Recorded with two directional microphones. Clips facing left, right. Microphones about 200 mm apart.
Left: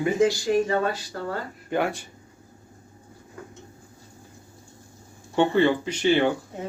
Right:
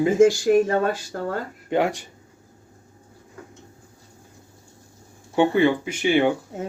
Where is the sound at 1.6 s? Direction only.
20° right (ahead or behind).